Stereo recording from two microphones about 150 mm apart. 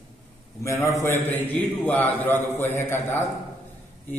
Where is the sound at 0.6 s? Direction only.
20° left (ahead or behind).